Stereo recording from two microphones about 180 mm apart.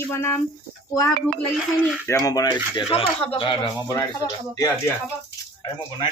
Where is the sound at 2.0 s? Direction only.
20° left (ahead or behind).